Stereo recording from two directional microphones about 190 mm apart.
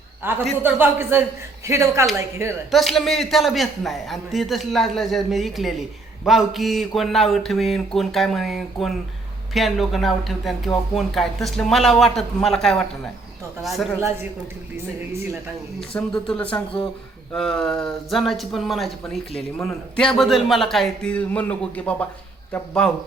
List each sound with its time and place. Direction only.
0.2 s speech: 10° right (ahead or behind)
2.6 s a man's voice: centre (ahead or behind)
16.0 s a man's voice: 5° left (ahead or behind)
19.5 s speech: 10° left (ahead or behind)
20.1 s a man's voice: centre (ahead or behind)